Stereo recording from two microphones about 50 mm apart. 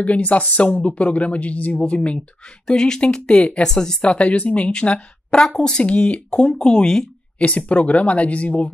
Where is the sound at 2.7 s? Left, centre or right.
Centre.